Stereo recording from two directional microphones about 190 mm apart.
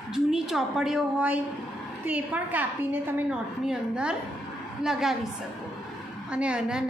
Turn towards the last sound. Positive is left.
turn(degrees=-5)  # may be behind; listen again after turning